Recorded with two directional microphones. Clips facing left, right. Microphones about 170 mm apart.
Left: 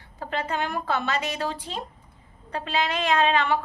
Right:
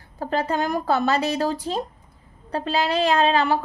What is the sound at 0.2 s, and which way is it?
A woman's voice, 40° right (ahead or behind).